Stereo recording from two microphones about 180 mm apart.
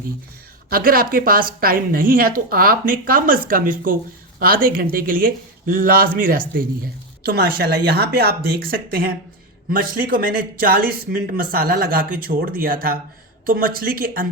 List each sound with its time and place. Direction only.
0.7 s a man's voice: 55° right (ahead or behind)